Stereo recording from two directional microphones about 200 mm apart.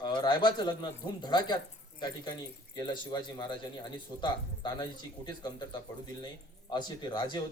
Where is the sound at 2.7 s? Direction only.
20° left (ahead or behind).